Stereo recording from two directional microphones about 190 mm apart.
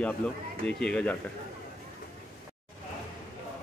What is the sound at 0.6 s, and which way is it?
Speech, 5° left (ahead or behind).